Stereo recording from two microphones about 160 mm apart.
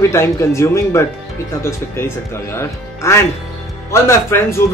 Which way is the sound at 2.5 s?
15° left (ahead or behind).